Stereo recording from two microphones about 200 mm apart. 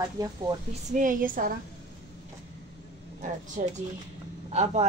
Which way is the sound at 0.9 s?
40° right (ahead or behind).